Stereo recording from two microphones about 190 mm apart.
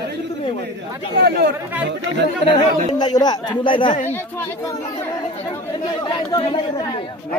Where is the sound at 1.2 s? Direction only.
60° right (ahead or behind).